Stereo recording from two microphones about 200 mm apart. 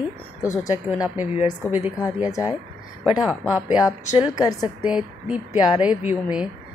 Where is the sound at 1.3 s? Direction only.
30° left (ahead or behind).